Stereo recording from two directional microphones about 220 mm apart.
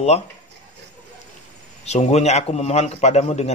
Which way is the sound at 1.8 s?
30° left (ahead or behind).